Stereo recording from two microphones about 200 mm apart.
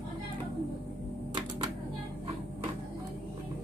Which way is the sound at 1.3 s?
25° right (ahead or behind).